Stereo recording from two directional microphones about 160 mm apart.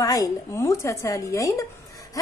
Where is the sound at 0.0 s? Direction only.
20° left (ahead or behind).